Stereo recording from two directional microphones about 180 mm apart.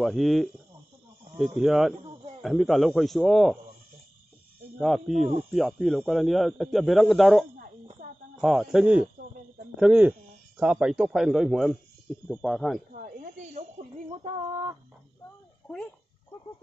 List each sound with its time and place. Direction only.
0.0 s speech: centre (ahead or behind)
4.7 s speech: centre (ahead or behind)
12.9 s speech: 50° right (ahead or behind); by 14.8 s 20° right (ahead or behind)